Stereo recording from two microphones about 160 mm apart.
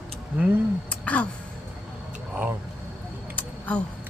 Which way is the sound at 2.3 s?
10° right (ahead or behind).